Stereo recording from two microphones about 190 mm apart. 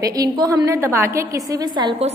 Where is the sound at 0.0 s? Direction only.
20° right (ahead or behind).